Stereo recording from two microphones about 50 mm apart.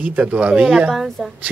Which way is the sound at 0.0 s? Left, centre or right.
Right.